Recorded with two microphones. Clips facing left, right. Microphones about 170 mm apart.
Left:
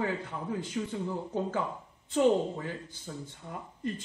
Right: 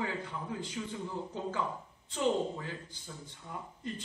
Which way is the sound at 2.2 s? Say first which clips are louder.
Left 6 dB; 50° left (ahead or behind).